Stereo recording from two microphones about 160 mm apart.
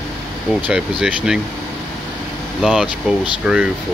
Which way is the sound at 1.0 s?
5° right (ahead or behind).